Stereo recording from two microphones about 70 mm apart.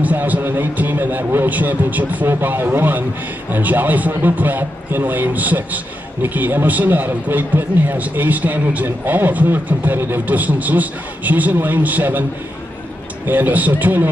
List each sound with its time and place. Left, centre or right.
0.0 s a man's voice: right
13.3 s a man's voice: right